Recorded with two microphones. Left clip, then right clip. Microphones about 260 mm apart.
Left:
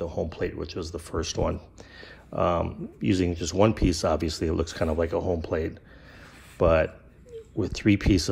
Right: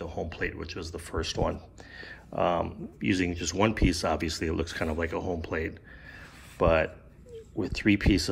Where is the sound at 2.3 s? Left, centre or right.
Right.